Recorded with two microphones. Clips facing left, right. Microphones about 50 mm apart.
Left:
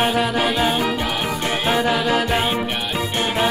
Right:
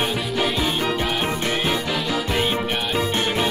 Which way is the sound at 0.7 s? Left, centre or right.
Centre.